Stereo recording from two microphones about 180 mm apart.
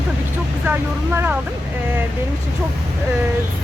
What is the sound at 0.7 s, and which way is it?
Speech, 10° right (ahead or behind).